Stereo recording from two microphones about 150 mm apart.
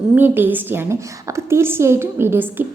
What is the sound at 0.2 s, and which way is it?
A woman's voice, 15° right (ahead or behind).